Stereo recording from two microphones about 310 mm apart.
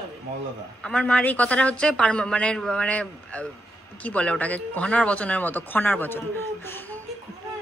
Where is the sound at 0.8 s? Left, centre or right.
Centre.